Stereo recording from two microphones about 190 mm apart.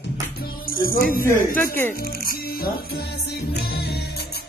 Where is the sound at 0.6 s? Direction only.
50° left (ahead or behind).